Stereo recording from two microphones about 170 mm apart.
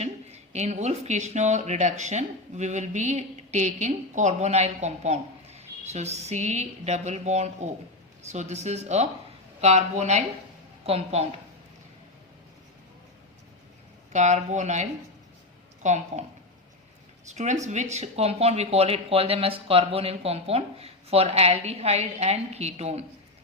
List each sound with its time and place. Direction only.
0.0 s speech: 40° right (ahead or behind)
14.1 s speech: 45° right (ahead or behind)
17.2 s speech: 45° right (ahead or behind)